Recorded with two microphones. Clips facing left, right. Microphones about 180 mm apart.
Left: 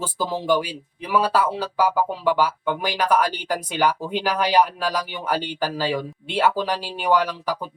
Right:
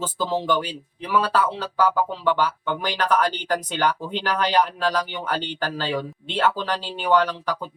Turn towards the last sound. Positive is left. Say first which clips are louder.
# even
turn(degrees=10)  # may be behind; listen again after turning